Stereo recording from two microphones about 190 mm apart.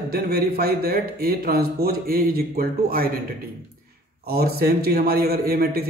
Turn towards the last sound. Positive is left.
turn(degrees=-55)  # may be behind; listen again after turning